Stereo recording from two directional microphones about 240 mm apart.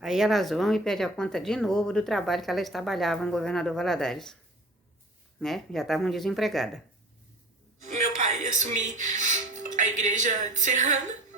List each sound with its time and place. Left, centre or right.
0.0 s speech: centre
5.4 s speech: centre
7.8 s speech: right